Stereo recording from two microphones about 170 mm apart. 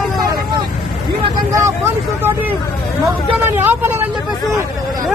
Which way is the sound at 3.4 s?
10° right (ahead or behind).